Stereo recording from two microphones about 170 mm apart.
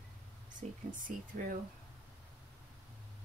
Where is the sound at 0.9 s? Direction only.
50° right (ahead or behind).